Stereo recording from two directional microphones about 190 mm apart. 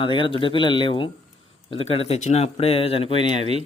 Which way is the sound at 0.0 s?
25° left (ahead or behind).